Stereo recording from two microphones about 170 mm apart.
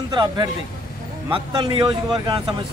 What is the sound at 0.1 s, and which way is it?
A man's voice, 25° right (ahead or behind).